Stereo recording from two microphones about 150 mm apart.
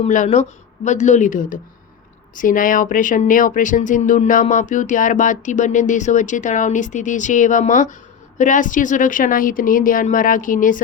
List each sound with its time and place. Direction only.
0.1 s speech: 55° left (ahead or behind)